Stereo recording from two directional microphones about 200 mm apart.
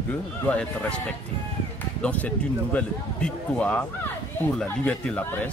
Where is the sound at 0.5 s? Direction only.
5° left (ahead or behind).